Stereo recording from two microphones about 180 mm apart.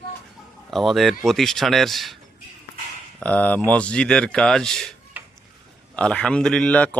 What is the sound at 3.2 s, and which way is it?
Speech, 5° left (ahead or behind).